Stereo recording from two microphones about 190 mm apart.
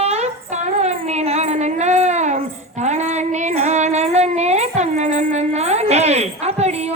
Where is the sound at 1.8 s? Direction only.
35° right (ahead or behind).